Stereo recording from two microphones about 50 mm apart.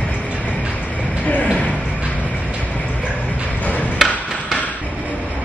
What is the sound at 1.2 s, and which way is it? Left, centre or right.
Music, left.